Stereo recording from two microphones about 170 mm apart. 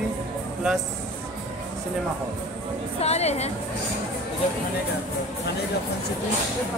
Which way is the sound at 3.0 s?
40° left (ahead or behind).